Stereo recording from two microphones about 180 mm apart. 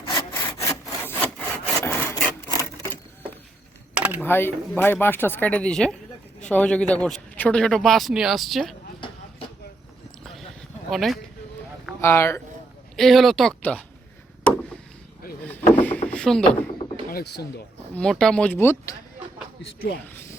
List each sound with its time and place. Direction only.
0.1 s sawing: 25° left (ahead or behind)
3.9 s typing: 10° right (ahead or behind)
4.2 s a man's voice: 10° left (ahead or behind)
10.2 s a sound: centre (ahead or behind)
11.9 s speech: 15° left (ahead or behind)
13.0 s a man's voice: centre (ahead or behind)
15.4 s a sound: 10° left (ahead or behind)
17.1 s speech: 55° left (ahead or behind)
17.9 s speech: 5° left (ahead or behind)
20.1 s speech: 10° left (ahead or behind)